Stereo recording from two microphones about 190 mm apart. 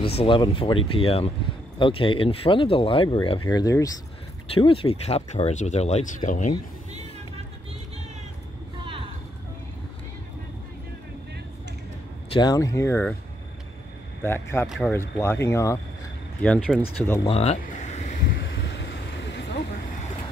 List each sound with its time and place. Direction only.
0.0 s speech: 30° left (ahead or behind)
8.8 s a sound: 25° right (ahead or behind)
12.3 s speech: 20° left (ahead or behind)
14.2 s speech: 10° left (ahead or behind)
15.1 s speech: 15° left (ahead or behind)
17.3 s a sound: 35° left (ahead or behind)
18.4 s vehicle: 70° left (ahead or behind)